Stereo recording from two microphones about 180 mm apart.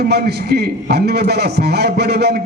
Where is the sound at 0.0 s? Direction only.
65° right (ahead or behind).